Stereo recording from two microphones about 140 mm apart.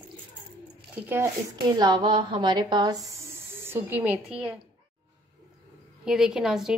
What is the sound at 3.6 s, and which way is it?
Speech, 15° right (ahead or behind).